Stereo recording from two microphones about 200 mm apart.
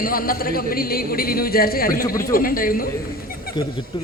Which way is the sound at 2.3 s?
45° left (ahead or behind).